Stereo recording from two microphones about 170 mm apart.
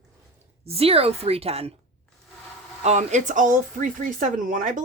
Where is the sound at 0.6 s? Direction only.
35° right (ahead or behind).